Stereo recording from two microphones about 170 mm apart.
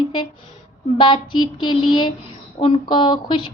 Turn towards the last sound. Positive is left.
turn(degrees=30)  # may be behind; listen again after turning